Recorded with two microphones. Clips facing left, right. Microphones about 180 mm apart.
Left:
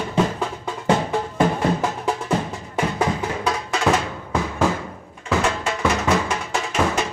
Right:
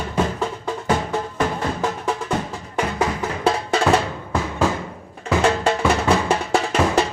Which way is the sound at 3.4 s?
30° right (ahead or behind).